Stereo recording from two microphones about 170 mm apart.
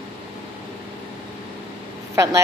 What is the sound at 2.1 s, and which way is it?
Speech, 20° right (ahead or behind).